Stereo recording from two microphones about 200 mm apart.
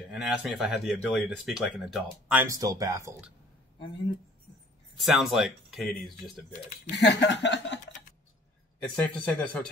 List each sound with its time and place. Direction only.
0.1 s speech: 5° right (ahead or behind)
4.9 s speech: centre (ahead or behind)
7.0 s chuckle: 60° left (ahead or behind)
8.7 s speech: 5° left (ahead or behind)